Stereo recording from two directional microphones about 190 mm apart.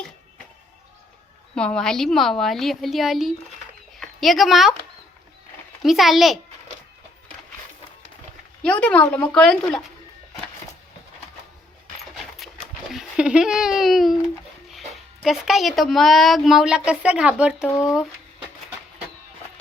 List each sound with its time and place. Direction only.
1.5 s a woman's voice: 5° left (ahead or behind)
5.8 s a woman's voice: centre (ahead or behind)
8.6 s a woman's voice: 5° left (ahead or behind)
12.9 s speech: 5° right (ahead or behind)